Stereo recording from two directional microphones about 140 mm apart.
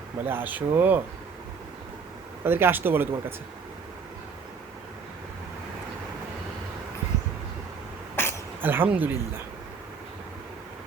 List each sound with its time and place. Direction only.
0.3 s speech: 15° right (ahead or behind)
2.4 s speech: 15° right (ahead or behind)
8.1 s a sound: 15° left (ahead or behind)
8.6 s speech: 15° right (ahead or behind)